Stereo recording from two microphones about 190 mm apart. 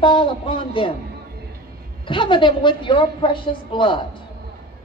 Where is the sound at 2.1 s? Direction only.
25° left (ahead or behind).